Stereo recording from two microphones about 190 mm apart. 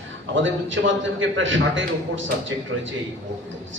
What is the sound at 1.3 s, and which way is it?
Speech, 90° right.